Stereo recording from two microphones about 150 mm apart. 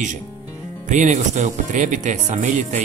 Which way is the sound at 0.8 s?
55° right (ahead or behind).